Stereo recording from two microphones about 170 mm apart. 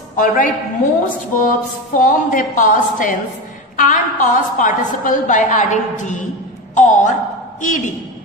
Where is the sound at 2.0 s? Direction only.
50° left (ahead or behind).